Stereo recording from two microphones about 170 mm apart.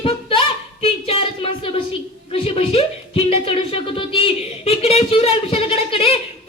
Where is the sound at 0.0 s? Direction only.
30° left (ahead or behind).